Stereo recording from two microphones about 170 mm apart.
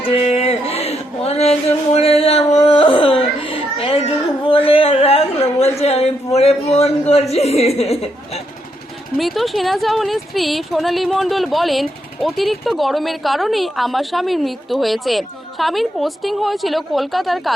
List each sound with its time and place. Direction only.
0.0 s a sound: 35° left (ahead or behind)
7.1 s chuckle: 35° left (ahead or behind)
9.1 s speech: centre (ahead or behind)